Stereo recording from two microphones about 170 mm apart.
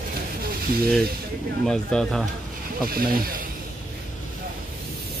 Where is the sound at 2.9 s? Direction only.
60° right (ahead or behind).